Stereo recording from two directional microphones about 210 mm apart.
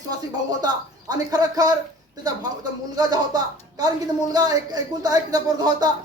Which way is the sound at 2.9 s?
20° right (ahead or behind).